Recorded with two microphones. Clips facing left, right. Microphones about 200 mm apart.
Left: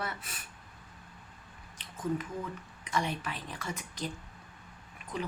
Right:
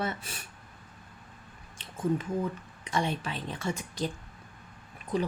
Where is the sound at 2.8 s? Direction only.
30° right (ahead or behind).